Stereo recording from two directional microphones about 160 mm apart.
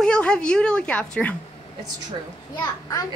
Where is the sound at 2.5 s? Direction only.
20° left (ahead or behind).